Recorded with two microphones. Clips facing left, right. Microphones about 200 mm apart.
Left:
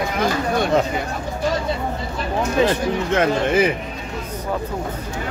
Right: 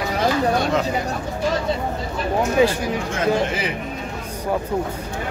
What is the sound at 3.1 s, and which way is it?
Speech, 50° left (ahead or behind).